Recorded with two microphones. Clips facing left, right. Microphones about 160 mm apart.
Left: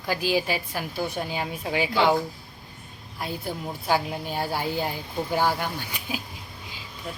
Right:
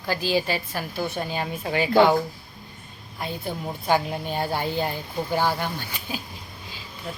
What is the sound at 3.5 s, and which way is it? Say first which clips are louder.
Speech: right 2 dB; 5° left (ahead or behind).